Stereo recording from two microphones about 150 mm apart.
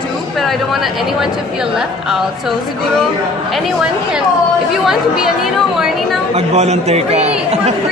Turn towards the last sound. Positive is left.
turn(degrees=-45)  # may be behind; listen again after turning